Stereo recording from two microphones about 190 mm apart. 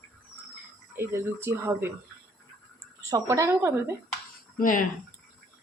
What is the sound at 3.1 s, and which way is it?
Speech, 15° right (ahead or behind).